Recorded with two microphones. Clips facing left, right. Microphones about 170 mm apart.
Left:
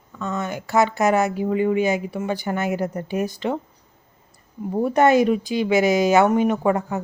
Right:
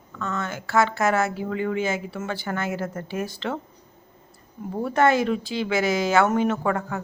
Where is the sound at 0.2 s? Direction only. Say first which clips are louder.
Left 3 dB; 15° left (ahead or behind).